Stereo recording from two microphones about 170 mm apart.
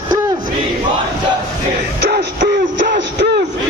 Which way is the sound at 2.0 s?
60° right (ahead or behind).